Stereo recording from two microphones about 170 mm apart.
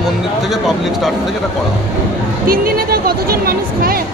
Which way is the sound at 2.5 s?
60° right (ahead or behind).